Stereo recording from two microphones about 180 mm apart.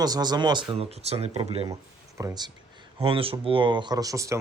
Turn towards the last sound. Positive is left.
turn(degrees=-20)  # may be behind; listen again after turning